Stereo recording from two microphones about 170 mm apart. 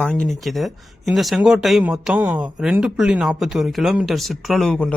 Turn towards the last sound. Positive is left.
turn(degrees=5)  # may be behind; listen again after turning